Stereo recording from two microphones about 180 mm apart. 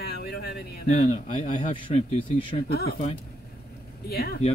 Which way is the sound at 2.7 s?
60° left (ahead or behind).